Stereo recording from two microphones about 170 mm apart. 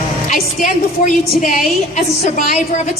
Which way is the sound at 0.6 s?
50° left (ahead or behind).